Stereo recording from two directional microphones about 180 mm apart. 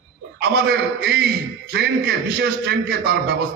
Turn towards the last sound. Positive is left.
turn(degrees=-65)  # may be behind; listen again after turning